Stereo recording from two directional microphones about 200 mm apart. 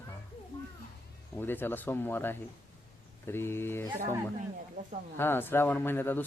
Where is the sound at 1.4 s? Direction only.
10° left (ahead or behind).